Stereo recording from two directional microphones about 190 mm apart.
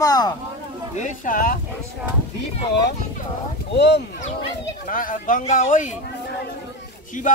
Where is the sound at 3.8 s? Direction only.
65° left (ahead or behind).